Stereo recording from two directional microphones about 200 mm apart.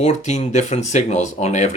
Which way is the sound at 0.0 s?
35° left (ahead or behind).